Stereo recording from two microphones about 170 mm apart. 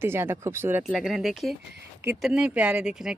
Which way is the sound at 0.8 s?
5° right (ahead or behind).